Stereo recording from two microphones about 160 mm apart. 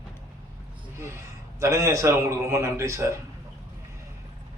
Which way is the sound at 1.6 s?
20° right (ahead or behind).